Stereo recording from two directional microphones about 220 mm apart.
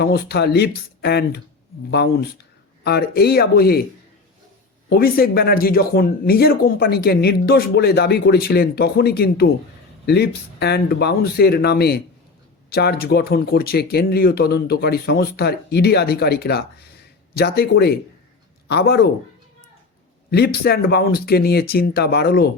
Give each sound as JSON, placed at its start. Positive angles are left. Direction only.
{"t": 0.0, "sound": "speech", "side_deg": 45}
{"t": 2.8, "sound": "speech", "side_deg": 45}
{"t": 4.9, "sound": "speech", "side_deg": 45}
{"t": 20.3, "sound": "speech", "side_deg": 45}